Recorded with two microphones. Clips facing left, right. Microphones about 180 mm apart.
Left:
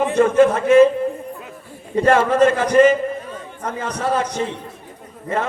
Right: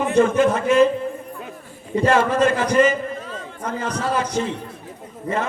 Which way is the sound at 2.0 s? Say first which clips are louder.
Left 3 dB; 55° left (ahead or behind).